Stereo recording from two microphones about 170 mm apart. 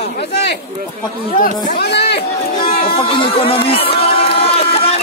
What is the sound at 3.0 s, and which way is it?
Crowd, 30° left (ahead or behind).